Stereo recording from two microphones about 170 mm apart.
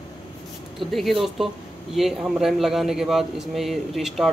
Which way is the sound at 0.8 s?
Centre (ahead or behind).